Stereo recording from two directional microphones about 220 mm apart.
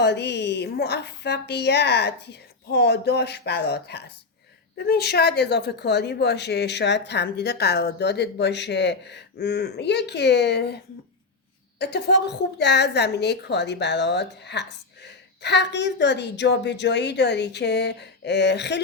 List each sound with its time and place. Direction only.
0.0 s a woman's voice: 50° left (ahead or behind)
11.8 s a woman's voice: 50° left (ahead or behind)